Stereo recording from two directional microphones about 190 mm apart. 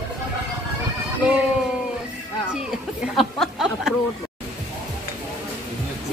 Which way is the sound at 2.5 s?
Centre (ahead or behind).